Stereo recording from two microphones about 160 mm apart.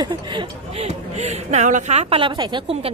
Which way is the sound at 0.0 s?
30° right (ahead or behind).